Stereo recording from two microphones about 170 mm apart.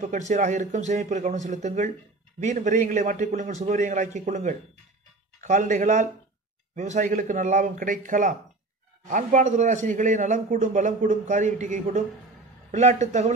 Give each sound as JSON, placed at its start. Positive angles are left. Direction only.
{"t": 0.0, "sound": "a man's voice", "side_deg": -45}